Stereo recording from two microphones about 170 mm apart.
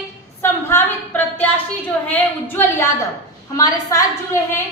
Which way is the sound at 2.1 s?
10° left (ahead or behind).